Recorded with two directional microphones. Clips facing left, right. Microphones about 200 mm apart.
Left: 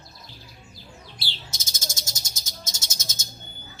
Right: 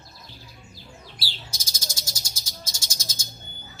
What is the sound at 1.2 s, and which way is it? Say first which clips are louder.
Bird: even; 25° left (ahead or behind).